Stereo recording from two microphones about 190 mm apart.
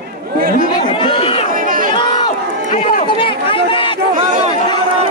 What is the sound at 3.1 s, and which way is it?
Chatter, 25° left (ahead or behind).